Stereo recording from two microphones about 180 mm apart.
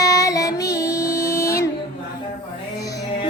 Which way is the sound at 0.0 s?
20° left (ahead or behind).